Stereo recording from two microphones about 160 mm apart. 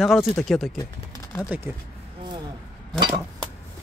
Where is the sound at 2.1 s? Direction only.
30° right (ahead or behind).